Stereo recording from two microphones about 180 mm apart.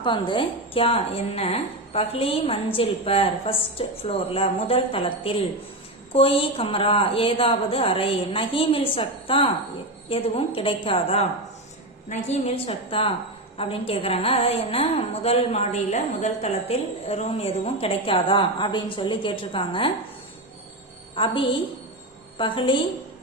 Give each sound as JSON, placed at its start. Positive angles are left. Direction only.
{"t": 0.0, "sound": "a woman's voice", "side_deg": 25}
{"t": 21.2, "sound": "a woman's voice", "side_deg": 30}